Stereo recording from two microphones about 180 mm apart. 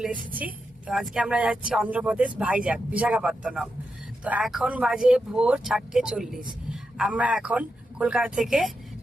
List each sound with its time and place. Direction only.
0.3 s a man's voice: 5° right (ahead or behind)